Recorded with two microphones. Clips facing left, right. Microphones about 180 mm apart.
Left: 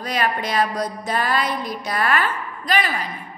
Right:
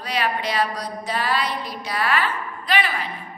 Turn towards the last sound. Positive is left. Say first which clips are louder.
# left 1 dB
turn(degrees=40)  # may be behind; listen again after turning